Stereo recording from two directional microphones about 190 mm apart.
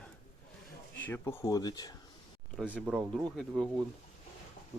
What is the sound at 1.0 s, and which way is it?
Speech, 15° left (ahead or behind).